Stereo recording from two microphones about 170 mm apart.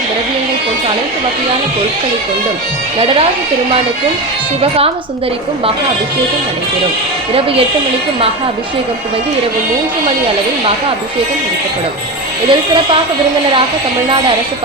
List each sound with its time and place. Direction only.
12.5 s speech: 30° right (ahead or behind)